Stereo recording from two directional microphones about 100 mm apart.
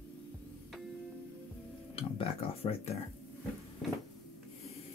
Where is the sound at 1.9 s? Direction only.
75° left (ahead or behind).